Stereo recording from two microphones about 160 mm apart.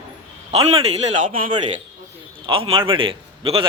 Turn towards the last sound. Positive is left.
turn(degrees=-35)  # may be behind; listen again after turning